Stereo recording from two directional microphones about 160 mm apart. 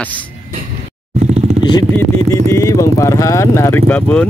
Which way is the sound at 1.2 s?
45° right (ahead or behind).